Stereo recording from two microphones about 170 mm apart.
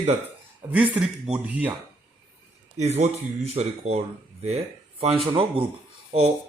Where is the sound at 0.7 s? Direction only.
10° right (ahead or behind).